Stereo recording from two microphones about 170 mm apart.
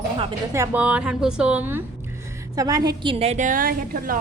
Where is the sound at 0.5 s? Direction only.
15° right (ahead or behind).